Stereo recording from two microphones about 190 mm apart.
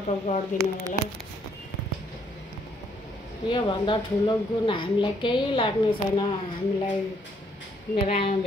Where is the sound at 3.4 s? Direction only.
25° left (ahead or behind).